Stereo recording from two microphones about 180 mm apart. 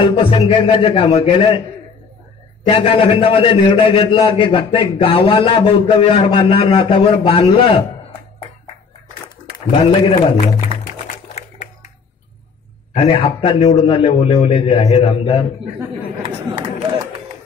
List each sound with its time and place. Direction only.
0.0 s a man's voice: 30° left (ahead or behind)
2.7 s a man's voice: 30° left (ahead or behind)
9.7 s a man's voice: 30° left (ahead or behind)
10.7 s music: 35° right (ahead or behind)
12.9 s a man's voice: 30° left (ahead or behind)